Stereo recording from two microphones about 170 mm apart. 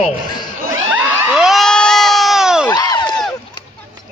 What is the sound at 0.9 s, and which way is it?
Crowd, 5° right (ahead or behind).